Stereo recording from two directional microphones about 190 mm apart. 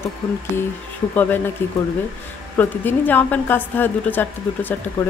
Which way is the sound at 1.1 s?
10° left (ahead or behind).